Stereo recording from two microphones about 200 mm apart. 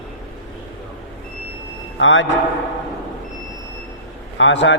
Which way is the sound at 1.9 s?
70° left (ahead or behind).